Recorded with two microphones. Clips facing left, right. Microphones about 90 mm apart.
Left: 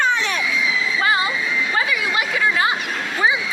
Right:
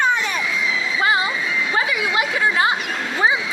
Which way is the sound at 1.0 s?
25° right (ahead or behind).